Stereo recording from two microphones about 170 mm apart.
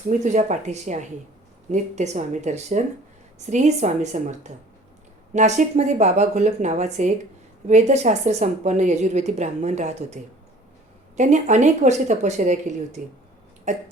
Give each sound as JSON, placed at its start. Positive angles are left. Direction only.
{"t": 0.1, "sound": "a woman's voice", "side_deg": -45}
{"t": 11.2, "sound": "a woman's voice", "side_deg": -45}